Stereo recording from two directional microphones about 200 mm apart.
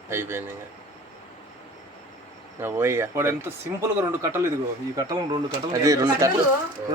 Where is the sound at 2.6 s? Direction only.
10° right (ahead or behind).